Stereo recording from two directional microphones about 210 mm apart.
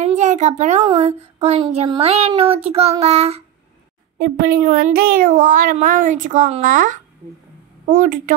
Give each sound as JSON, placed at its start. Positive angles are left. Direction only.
{"t": 0.0, "sound": "a child's voice", "side_deg": -35}
{"t": 4.2, "sound": "speech", "side_deg": -50}